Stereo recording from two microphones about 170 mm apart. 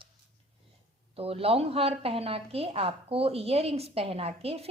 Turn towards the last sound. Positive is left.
turn(degrees=-35)  # may be behind; listen again after turning